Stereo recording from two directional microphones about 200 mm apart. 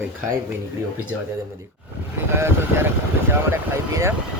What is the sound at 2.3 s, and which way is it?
Speech, 10° right (ahead or behind).